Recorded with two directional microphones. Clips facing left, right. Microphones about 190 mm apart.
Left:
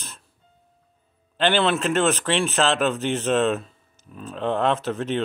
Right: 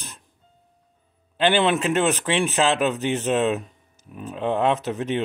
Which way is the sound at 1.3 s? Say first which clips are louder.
Right 1 dB; 15° right (ahead or behind).